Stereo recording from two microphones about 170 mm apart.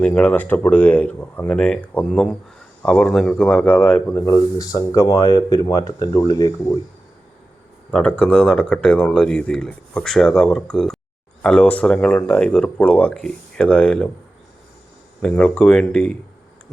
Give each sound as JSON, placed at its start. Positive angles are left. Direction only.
{"t": 0.0, "sound": "speech", "side_deg": 10}
{"t": 7.9, "sound": "speech", "side_deg": 10}
{"t": 15.2, "sound": "speech", "side_deg": 5}